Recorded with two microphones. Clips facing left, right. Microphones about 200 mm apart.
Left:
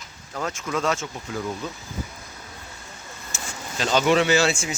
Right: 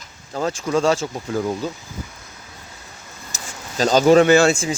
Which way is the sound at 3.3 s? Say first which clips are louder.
Left 1 dB; 40° right (ahead or behind).